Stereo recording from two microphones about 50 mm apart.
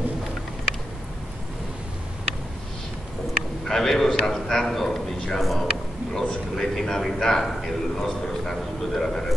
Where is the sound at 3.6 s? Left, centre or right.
Centre.